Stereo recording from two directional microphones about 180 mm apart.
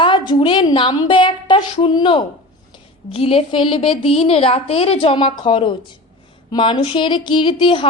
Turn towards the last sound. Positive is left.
turn(degrees=25)  # may be behind; listen again after turning